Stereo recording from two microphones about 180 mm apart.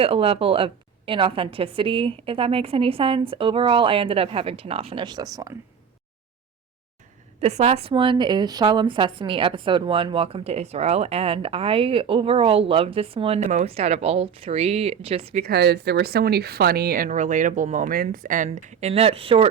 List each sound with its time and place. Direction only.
0.0 s a woman's voice: 30° right (ahead or behind)
7.4 s a woman's voice: 35° right (ahead or behind)
15.4 s speech: 65° right (ahead or behind); by 19.5 s 30° right (ahead or behind)